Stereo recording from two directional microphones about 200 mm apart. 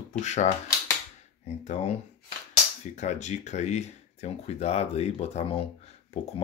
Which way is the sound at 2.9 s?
35° left (ahead or behind).